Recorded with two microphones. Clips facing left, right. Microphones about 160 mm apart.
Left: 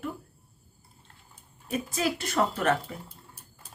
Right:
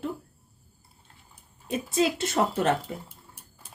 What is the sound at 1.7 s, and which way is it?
Speech, 25° right (ahead or behind).